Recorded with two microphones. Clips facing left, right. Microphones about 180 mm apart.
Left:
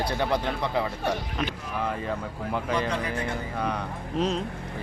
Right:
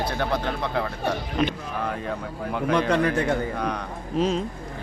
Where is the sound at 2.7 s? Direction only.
70° right (ahead or behind).